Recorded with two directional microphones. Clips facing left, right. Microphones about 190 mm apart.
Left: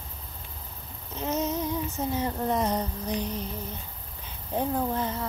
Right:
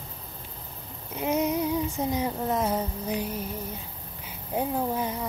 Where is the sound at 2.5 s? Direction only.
5° right (ahead or behind).